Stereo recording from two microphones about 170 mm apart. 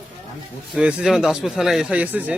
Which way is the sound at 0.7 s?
5° right (ahead or behind).